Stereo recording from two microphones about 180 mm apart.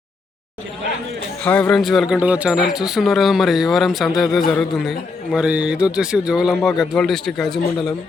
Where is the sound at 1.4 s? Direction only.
5° left (ahead or behind).